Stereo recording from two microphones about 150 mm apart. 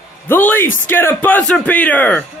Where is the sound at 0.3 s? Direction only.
15° left (ahead or behind).